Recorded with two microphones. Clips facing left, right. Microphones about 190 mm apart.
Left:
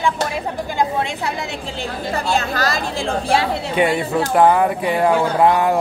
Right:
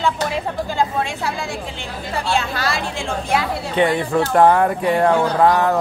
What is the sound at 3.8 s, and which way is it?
A man's voice, 10° left (ahead or behind).